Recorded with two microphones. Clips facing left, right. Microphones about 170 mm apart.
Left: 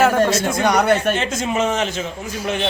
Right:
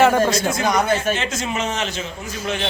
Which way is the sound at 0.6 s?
70° left (ahead or behind).